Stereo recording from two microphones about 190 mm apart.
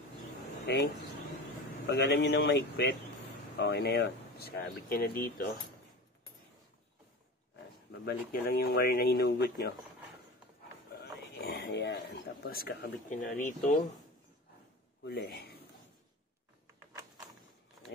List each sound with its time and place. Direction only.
0.7 s speech: 60° left (ahead or behind)
1.9 s speech: 65° left (ahead or behind)
8.0 s speech: 50° left (ahead or behind)
11.0 s speech: 60° left (ahead or behind)
15.0 s speech: 60° left (ahead or behind)